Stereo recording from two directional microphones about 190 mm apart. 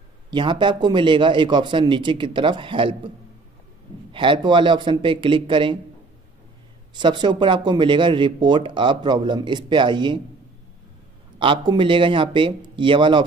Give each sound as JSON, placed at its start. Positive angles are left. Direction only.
{"t": 0.3, "sound": "speech", "side_deg": -25}
{"t": 4.1, "sound": "speech", "side_deg": -25}
{"t": 6.9, "sound": "speech", "side_deg": -25}
{"t": 11.3, "sound": "speech", "side_deg": -25}